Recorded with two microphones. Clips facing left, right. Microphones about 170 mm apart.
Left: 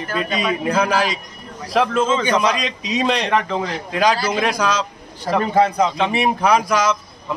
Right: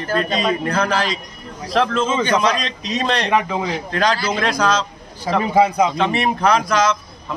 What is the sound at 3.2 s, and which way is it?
Speech, 10° right (ahead or behind).